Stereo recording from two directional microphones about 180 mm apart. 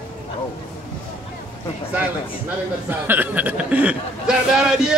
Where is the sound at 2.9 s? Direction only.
10° right (ahead or behind).